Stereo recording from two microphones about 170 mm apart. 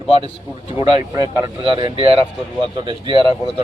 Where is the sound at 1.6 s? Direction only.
30° right (ahead or behind).